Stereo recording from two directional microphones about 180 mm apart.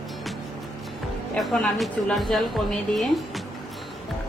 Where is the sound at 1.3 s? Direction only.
5° left (ahead or behind).